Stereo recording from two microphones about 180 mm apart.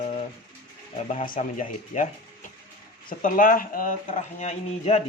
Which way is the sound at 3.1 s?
45° left (ahead or behind).